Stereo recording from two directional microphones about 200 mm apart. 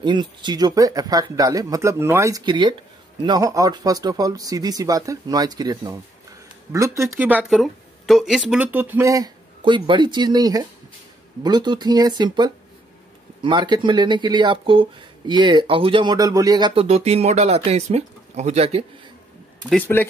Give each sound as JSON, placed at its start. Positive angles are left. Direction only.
{"t": 0.0, "sound": "speech", "side_deg": -20}
{"t": 19.7, "sound": "speech", "side_deg": 10}